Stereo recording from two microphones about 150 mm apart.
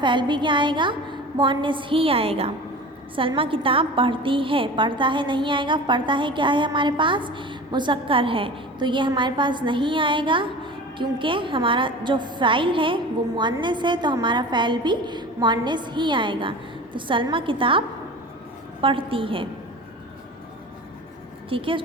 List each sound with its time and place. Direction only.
0.0 s a woman's voice: 30° right (ahead or behind)
21.5 s a woman's voice: 35° right (ahead or behind)